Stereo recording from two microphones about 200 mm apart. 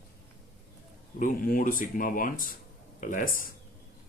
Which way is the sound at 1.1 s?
45° left (ahead or behind).